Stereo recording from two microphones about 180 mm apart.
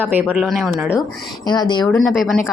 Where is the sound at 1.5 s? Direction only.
25° left (ahead or behind).